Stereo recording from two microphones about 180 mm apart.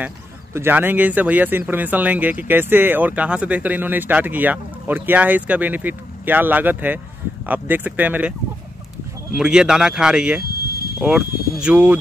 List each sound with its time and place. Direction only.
0.0 s speech: 10° right (ahead or behind)
9.4 s speech: 5° right (ahead or behind)
10.6 s a sound: 60° left (ahead or behind)
11.0 s speech: centre (ahead or behind)